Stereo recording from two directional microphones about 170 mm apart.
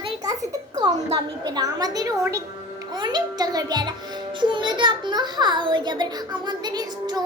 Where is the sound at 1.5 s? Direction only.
20° right (ahead or behind).